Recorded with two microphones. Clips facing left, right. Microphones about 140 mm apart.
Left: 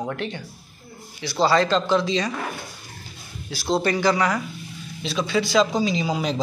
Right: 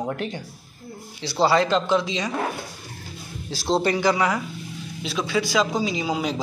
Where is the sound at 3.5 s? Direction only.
25° right (ahead or behind).